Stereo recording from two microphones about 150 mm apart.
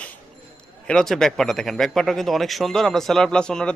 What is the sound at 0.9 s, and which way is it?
A man's voice, 5° left (ahead or behind).